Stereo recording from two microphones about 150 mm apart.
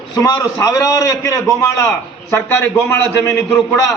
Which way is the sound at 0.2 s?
25° left (ahead or behind).